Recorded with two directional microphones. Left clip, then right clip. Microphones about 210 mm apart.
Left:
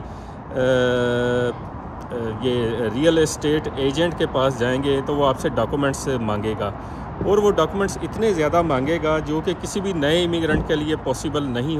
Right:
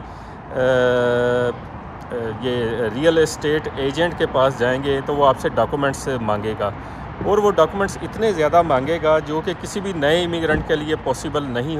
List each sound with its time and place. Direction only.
0.6 s mantra: 10° left (ahead or behind)
2.2 s speech: 10° left (ahead or behind)
2.6 s speech: 15° right (ahead or behind)
2.9 s speech: 10° left (ahead or behind)